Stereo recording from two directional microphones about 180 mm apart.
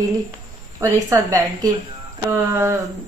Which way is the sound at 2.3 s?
15° right (ahead or behind).